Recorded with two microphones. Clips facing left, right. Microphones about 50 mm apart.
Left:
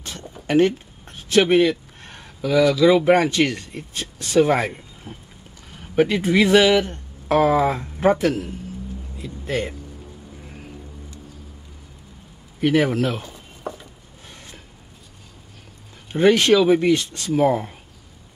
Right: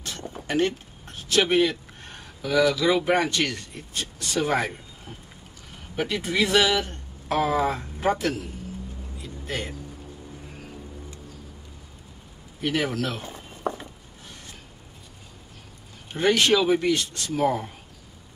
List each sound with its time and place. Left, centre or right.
0.5 s a sound: left
2.7 s speech: left
5.1 s boat: left
5.9 s speech: left
12.6 s speech: left
13.2 s a sound: right
16.1 s speech: left